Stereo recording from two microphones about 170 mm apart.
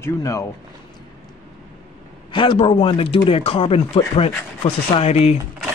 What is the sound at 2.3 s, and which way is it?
Speech, 30° left (ahead or behind).